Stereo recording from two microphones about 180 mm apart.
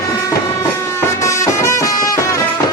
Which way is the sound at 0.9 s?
15° left (ahead or behind).